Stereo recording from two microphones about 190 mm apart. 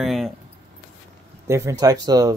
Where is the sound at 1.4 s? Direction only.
15° right (ahead or behind).